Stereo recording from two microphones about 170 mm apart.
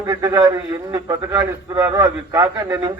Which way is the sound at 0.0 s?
15° right (ahead or behind).